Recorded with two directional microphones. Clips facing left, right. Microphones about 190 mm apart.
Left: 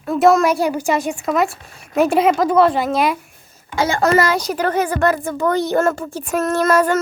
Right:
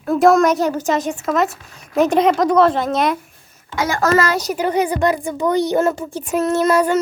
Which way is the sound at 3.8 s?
25° left (ahead or behind).